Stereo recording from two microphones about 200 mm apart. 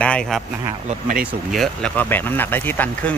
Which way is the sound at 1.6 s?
5° left (ahead or behind).